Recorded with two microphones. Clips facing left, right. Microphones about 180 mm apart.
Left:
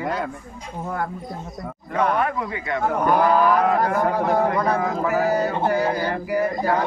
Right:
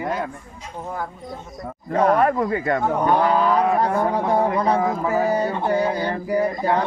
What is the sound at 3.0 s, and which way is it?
Speech, 25° right (ahead or behind).